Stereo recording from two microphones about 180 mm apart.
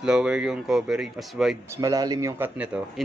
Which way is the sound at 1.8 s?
20° right (ahead or behind).